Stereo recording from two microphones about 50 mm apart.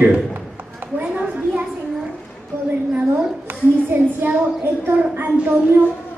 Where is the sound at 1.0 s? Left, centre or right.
Right.